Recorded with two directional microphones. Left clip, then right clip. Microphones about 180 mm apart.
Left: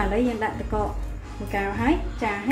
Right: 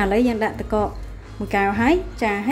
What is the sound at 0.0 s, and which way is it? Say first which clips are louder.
A woman's voice: right 5 dB; 60° right (ahead or behind).